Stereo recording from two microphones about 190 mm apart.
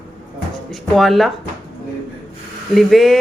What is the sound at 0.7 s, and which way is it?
Speech, centre (ahead or behind).